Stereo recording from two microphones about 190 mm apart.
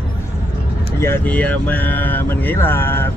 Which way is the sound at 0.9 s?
10° left (ahead or behind).